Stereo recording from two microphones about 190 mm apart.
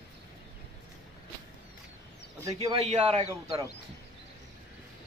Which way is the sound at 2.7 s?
35° right (ahead or behind).